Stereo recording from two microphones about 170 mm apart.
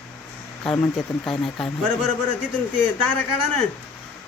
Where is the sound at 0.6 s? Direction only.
5° left (ahead or behind).